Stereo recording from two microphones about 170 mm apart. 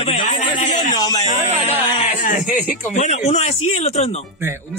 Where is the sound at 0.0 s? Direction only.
35° left (ahead or behind).